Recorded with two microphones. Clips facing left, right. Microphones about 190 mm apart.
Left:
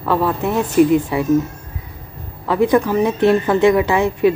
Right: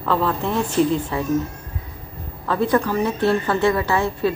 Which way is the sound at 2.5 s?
15° left (ahead or behind).